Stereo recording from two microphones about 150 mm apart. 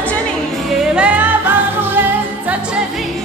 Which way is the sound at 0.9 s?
10° right (ahead or behind).